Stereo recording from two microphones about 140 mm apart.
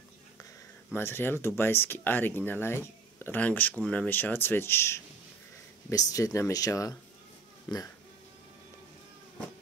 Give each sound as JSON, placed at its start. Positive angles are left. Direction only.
{"t": 0.9, "sound": "speech", "side_deg": 15}